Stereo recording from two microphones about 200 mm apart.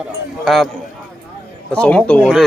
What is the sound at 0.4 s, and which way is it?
Speech, centre (ahead or behind).